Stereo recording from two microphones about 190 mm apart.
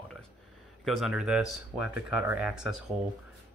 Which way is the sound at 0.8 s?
Centre (ahead or behind).